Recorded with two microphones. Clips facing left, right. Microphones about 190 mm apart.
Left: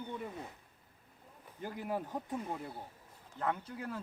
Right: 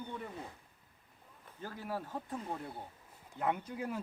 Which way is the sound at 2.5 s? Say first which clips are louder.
Even; centre (ahead or behind).